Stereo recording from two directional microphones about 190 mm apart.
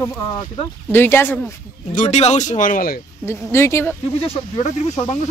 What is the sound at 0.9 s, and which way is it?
Speech, 10° left (ahead or behind).